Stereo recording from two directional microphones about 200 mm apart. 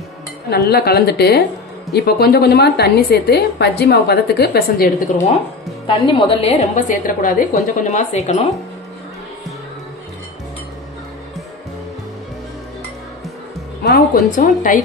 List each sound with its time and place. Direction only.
0.5 s a woman's voice: 50° left (ahead or behind)
5.9 s a woman's voice: 25° left (ahead or behind)
14.3 s a woman's voice: 40° left (ahead or behind)